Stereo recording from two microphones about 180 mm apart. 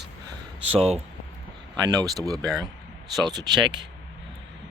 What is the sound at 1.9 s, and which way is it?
Speech, 20° right (ahead or behind).